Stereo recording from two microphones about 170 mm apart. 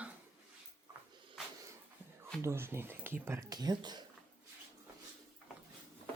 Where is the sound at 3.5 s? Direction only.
25° right (ahead or behind).